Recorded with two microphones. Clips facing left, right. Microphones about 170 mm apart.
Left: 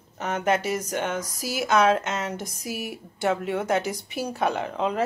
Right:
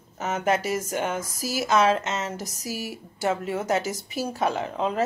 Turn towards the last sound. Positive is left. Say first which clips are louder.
# even
turn(degrees=0)  # may be behind; listen again after turning